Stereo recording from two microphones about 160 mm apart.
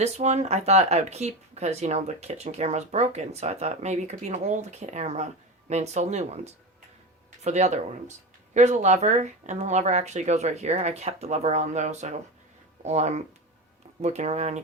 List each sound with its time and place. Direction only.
0.0 s speech: 45° right (ahead or behind)